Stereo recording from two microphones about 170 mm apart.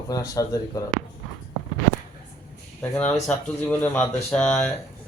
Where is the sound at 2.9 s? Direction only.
10° left (ahead or behind).